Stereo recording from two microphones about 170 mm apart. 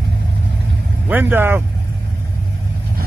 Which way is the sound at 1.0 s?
10° right (ahead or behind).